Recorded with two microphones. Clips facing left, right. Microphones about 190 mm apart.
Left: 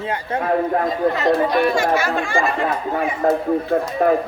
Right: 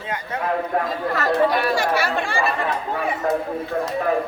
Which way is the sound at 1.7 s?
35° right (ahead or behind).